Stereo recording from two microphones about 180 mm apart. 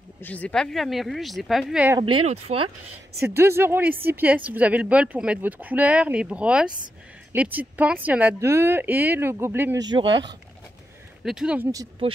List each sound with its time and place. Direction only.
0.2 s speech: 10° left (ahead or behind)
2.2 s speech: 35° right (ahead or behind)
3.2 s speech: 15° right (ahead or behind)
11.2 s speech: 5° right (ahead or behind)